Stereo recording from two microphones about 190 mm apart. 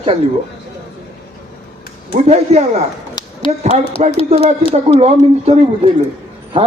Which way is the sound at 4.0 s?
35° right (ahead or behind).